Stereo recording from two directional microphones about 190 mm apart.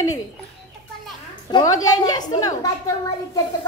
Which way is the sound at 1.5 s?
20° left (ahead or behind).